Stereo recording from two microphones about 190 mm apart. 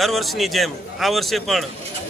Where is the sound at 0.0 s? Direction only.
Centre (ahead or behind).